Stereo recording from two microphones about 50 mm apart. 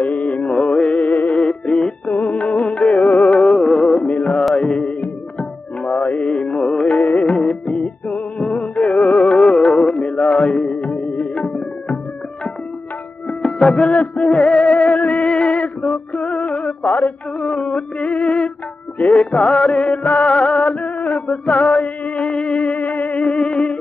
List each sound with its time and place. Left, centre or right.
0.0 s music: left
0.5 s music: centre; by 1.3 s left
1.3 s music: centre
2.2 s music: left
4.0 s music: left
9.9 s mantra: left
10.5 s music: left
13.3 s music: centre
14.2 s music: centre
14.5 s music: left
17.5 s a sound: left
19.1 s music: centre
23.2 s music: centre